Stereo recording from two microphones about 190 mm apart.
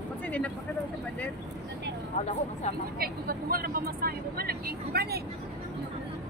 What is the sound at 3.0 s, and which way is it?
Speech, 50° right (ahead or behind).